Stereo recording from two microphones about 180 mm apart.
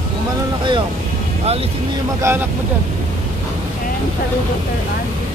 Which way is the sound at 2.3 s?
15° right (ahead or behind).